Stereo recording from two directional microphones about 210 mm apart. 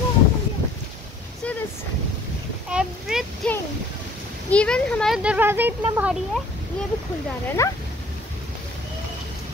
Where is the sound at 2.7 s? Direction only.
5° right (ahead or behind).